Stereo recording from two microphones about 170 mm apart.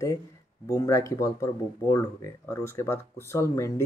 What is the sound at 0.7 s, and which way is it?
Speech, 20° left (ahead or behind).